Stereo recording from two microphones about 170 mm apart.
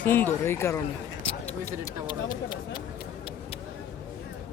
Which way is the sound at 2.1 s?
25° left (ahead or behind).